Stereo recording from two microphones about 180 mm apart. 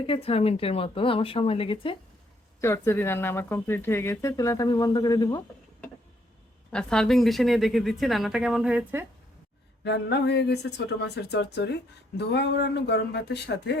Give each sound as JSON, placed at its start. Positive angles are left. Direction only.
{"t": 0.0, "sound": "a woman's voice", "side_deg": 30}
{"t": 2.6, "sound": "speech", "side_deg": 15}
{"t": 6.7, "sound": "a woman's voice", "side_deg": 5}
{"t": 9.8, "sound": "speech", "side_deg": 70}